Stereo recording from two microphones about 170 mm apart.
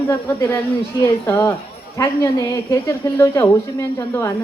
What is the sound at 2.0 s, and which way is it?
A woman's voice, 15° left (ahead or behind).